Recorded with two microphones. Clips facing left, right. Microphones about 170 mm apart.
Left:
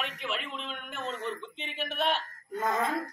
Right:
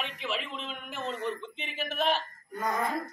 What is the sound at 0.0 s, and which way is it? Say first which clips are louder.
Speech: right 1 dB; centre (ahead or behind).